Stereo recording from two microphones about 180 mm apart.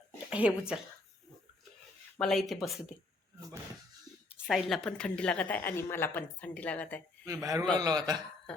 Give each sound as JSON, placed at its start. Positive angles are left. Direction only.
{"t": 0.3, "sound": "a sound", "side_deg": -5}
{"t": 2.1, "sound": "speech", "side_deg": 0}
{"t": 4.3, "sound": "a woman's voice", "side_deg": -5}
{"t": 7.3, "sound": "a man's voice", "side_deg": -20}